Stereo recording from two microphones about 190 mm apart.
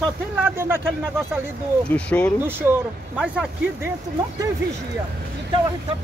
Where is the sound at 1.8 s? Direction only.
5° left (ahead or behind).